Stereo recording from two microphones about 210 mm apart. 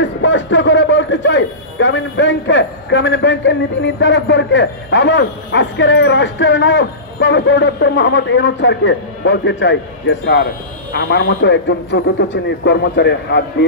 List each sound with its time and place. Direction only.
0.0 s a man's voice: 60° left (ahead or behind)